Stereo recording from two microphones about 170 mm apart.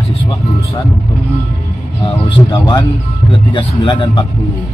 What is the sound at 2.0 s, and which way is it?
Speech, 35° left (ahead or behind).